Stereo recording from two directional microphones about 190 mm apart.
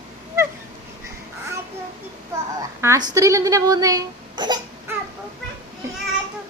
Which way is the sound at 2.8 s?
15° right (ahead or behind).